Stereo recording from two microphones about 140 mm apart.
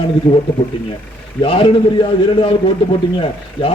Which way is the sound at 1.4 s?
40° left (ahead or behind).